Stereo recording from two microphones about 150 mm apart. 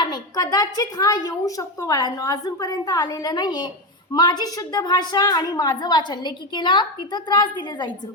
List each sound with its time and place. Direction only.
0.0 s a woman's voice: 25° left (ahead or behind)